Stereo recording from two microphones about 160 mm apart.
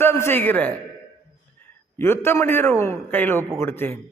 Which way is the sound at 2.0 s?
15° left (ahead or behind).